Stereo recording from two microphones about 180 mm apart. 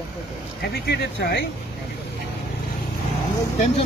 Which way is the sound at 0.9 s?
70° left (ahead or behind).